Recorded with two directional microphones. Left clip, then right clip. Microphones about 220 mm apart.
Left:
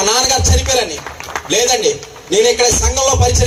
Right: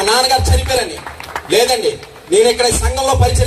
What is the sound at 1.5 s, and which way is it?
Speech, 45° left (ahead or behind).